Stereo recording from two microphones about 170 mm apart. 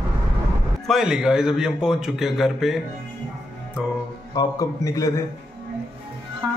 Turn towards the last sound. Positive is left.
turn(degrees=20)  # may be behind; listen again after turning